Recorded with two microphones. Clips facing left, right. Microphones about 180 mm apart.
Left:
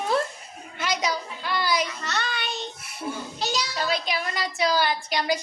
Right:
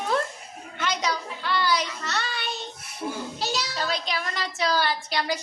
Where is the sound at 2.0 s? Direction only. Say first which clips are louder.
Left 1 dB; centre (ahead or behind).